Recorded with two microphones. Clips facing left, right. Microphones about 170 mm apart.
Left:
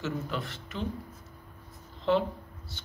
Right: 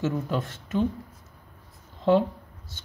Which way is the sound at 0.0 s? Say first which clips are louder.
Right 6 dB; 45° right (ahead or behind).